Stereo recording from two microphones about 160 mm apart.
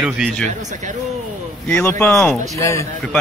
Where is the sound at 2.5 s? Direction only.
20° left (ahead or behind).